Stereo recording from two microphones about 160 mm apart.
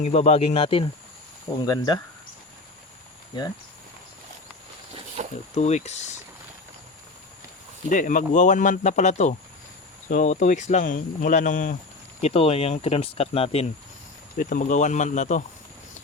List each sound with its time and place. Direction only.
0.0 s speech: 45° left (ahead or behind)
1.6 s speech: 25° left (ahead or behind)
5.2 s a sound: 50° right (ahead or behind)
5.5 s speech: 45° left (ahead or behind)
7.9 s speech: 55° left (ahead or behind)
12.2 s speech: 40° left (ahead or behind)
14.3 s speech: 55° left (ahead or behind)